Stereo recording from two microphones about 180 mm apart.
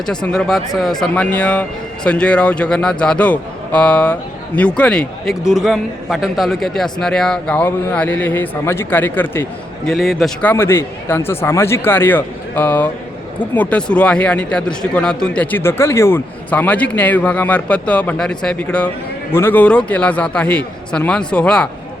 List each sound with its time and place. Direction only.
0.0 s a man's voice: 5° left (ahead or behind)
9.9 s speech: centre (ahead or behind)
10.5 s a man's voice: 15° left (ahead or behind)